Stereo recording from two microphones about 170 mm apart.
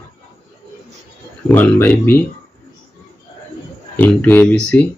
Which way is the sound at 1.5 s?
10° left (ahead or behind).